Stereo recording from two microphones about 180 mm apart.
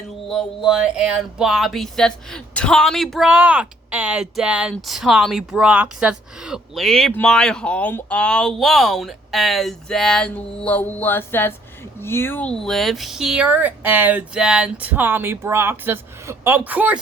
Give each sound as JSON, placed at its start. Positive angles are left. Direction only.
{"t": 0.3, "sound": "speech", "side_deg": 0}